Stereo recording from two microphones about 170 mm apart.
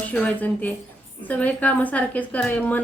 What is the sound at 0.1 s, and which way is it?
A woman's voice, 10° left (ahead or behind).